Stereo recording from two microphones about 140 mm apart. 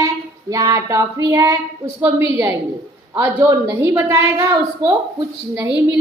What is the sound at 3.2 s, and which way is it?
A woman's voice, 20° right (ahead or behind).